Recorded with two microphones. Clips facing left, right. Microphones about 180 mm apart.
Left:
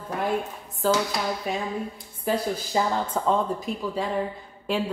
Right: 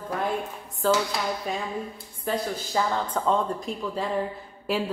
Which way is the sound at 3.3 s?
Centre (ahead or behind).